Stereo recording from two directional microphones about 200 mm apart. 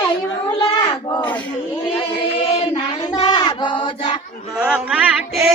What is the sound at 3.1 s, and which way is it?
Child singing, 20° left (ahead or behind).